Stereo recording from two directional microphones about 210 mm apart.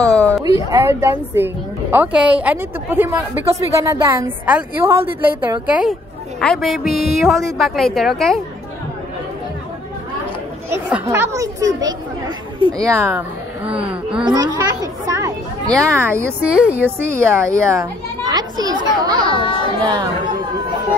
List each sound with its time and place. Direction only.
0.0 s a sound: 5° left (ahead or behind)
0.4 s a woman's voice: 15° right (ahead or behind); by 8.4 s centre (ahead or behind)
10.7 s a woman's voice: 10° right (ahead or behind)
14.2 s speech: 20° right (ahead or behind)
15.6 s speech: 5° left (ahead or behind)
16.0 s a woman's voice: 10° right (ahead or behind)
19.3 s a child's voice: 25° left (ahead or behind)
19.8 s speech: 20° right (ahead or behind)